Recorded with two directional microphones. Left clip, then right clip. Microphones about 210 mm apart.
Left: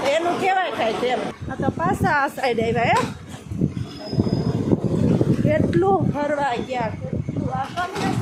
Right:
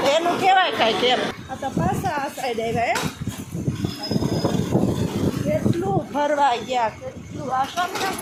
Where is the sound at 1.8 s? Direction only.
40° left (ahead or behind).